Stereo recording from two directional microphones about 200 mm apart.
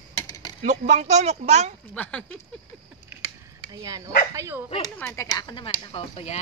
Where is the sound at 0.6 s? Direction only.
40° right (ahead or behind).